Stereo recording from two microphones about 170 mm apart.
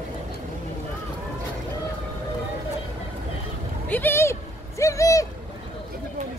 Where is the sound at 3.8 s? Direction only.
10° left (ahead or behind).